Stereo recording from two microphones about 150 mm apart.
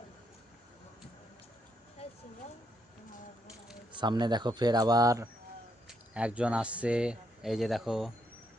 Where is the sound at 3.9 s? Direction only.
30° right (ahead or behind).